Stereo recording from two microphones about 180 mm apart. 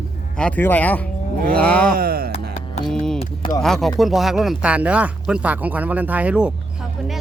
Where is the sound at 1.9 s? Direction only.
55° right (ahead or behind).